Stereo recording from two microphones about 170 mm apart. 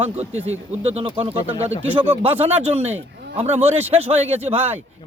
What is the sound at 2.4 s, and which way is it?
Speech, 40° right (ahead or behind).